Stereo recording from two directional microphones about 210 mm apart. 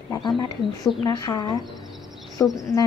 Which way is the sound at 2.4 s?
5° left (ahead or behind).